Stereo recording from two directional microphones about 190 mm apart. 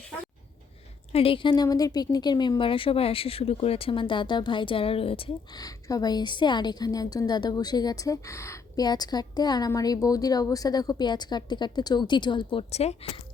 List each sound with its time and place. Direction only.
1.1 s a woman's voice: 30° left (ahead or behind)